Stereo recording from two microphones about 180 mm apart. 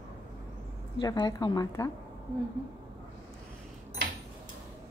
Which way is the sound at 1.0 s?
25° left (ahead or behind).